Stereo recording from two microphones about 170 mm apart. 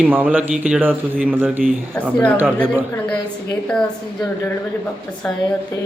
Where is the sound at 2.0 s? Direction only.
10° left (ahead or behind).